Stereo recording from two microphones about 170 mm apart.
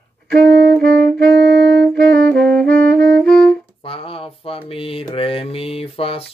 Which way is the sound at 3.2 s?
5° left (ahead or behind).